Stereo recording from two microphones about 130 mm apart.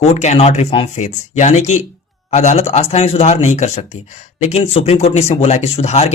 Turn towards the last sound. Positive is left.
turn(degrees=55)  # may be behind; listen again after turning